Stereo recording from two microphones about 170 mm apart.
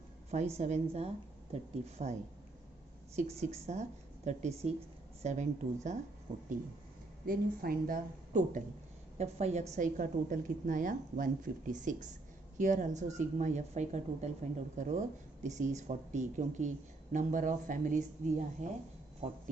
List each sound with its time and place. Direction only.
0.6 s a woman's voice: 40° right (ahead or behind)
3.2 s a woman's voice: 40° right (ahead or behind)
7.2 s a woman's voice: 60° right (ahead or behind)